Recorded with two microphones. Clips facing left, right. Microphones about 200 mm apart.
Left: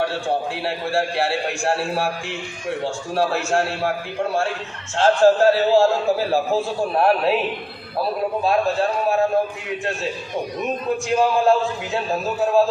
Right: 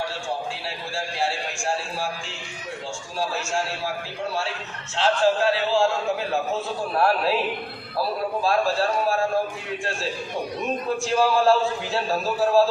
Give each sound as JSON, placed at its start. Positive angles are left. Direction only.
{"t": 0.6, "sound": "a man's voice", "side_deg": 60}
{"t": 4.9, "sound": "a man's voice", "side_deg": 45}
{"t": 11.1, "sound": "a man's voice", "side_deg": 20}